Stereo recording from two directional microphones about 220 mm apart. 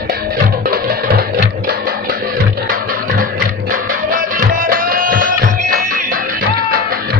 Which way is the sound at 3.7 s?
40° right (ahead or behind).